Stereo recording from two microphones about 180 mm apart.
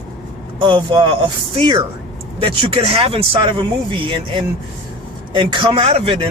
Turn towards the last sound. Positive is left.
turn(degrees=-30)  # may be behind; listen again after turning